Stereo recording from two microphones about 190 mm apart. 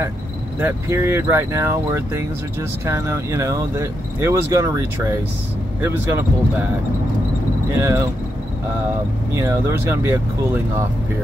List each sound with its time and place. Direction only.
0.6 s speech: 10° right (ahead or behind)
7.7 s speech: 15° right (ahead or behind)
9.3 s speech: 15° right (ahead or behind)